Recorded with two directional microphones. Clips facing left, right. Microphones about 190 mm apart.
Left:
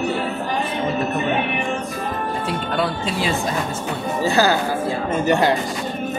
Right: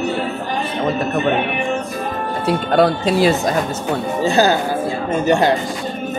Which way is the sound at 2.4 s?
40° right (ahead or behind).